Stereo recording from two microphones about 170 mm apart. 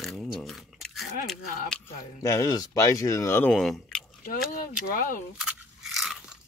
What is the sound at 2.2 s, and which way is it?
Speech, 20° left (ahead or behind).